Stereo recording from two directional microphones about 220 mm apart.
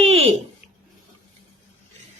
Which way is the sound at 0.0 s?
25° right (ahead or behind).